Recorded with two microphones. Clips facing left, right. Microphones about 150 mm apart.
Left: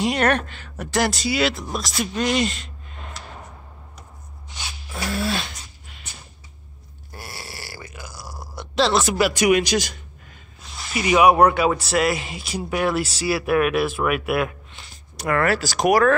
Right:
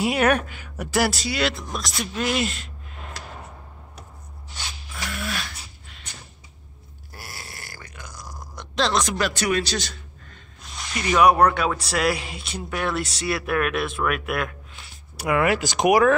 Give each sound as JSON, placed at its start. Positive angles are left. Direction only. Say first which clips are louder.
{"t": 0.0, "sound": "speech", "louder": "even", "side_deg": -10}
{"t": 4.9, "sound": "dog", "louder": "left 7 dB", "side_deg": 30}
{"t": 7.1, "sound": "burping", "louder": "left 3 dB", "side_deg": 0}
{"t": 10.6, "sound": "speech", "louder": "left 4 dB", "side_deg": 5}